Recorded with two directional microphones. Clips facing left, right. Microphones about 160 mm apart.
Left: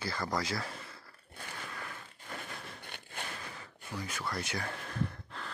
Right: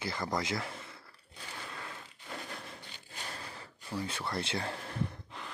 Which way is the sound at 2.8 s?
60° left (ahead or behind).